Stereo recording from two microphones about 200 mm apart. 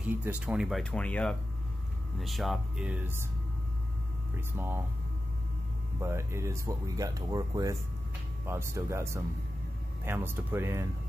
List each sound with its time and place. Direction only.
0.0 s speech: 10° right (ahead or behind)
4.4 s speech: 10° right (ahead or behind)
5.9 s speech: 15° right (ahead or behind)